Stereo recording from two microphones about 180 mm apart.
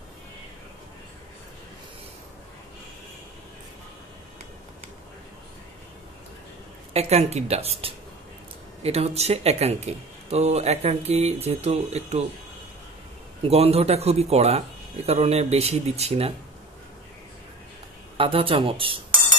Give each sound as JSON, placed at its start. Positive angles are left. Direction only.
{"t": 6.9, "sound": "speech", "side_deg": -35}
{"t": 13.5, "sound": "speech", "side_deg": -35}
{"t": 18.1, "sound": "speech", "side_deg": -30}